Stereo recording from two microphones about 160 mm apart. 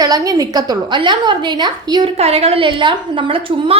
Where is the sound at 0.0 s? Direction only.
20° right (ahead or behind).